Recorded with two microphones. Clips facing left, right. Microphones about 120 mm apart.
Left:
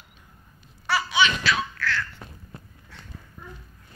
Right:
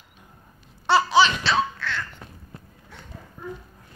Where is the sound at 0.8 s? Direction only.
30° right (ahead or behind).